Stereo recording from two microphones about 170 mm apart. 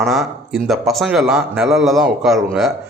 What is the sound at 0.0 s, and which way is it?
A man's voice, centre (ahead or behind).